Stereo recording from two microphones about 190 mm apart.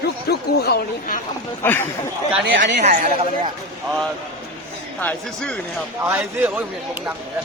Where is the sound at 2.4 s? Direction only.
65° right (ahead or behind).